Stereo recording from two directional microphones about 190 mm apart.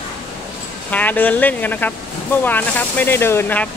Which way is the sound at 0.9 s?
10° left (ahead or behind).